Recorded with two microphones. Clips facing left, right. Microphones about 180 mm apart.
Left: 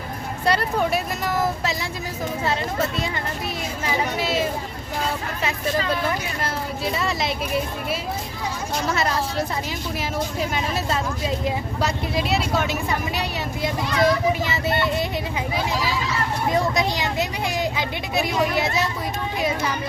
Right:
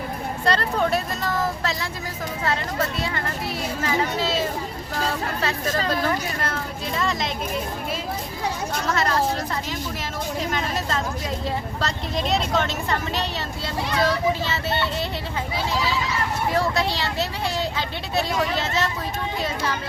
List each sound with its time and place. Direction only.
0.4 s speech: 10° left (ahead or behind)
3.8 s speech: 15° left (ahead or behind)
5.8 s speech: 40° right (ahead or behind)
6.9 s speech: 5° left (ahead or behind)
8.9 s speech: 10° left (ahead or behind)
10.5 s speech: 10° left (ahead or behind)
16.5 s speech: 15° left (ahead or behind)